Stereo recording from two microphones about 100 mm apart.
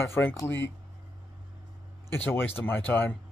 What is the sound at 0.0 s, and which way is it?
Speech, 20° left (ahead or behind).